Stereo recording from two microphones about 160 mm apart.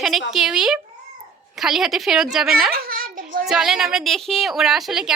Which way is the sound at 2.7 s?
65° right (ahead or behind).